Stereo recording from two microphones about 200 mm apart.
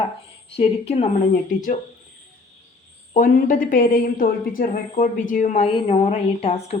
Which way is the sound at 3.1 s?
40° left (ahead or behind).